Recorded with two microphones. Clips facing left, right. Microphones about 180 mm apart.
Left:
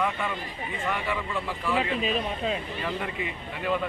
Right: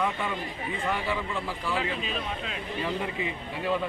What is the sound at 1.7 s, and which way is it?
Speech, 5° left (ahead or behind).